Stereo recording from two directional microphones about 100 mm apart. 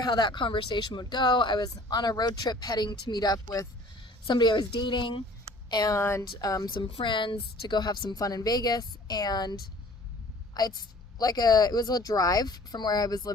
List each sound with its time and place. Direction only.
0.0 s speech: 45° left (ahead or behind)
4.3 s speech: 50° left (ahead or behind)
5.7 s speech: 40° left (ahead or behind)
6.0 s speech: 25° left (ahead or behind)
7.0 s speech: 55° left (ahead or behind)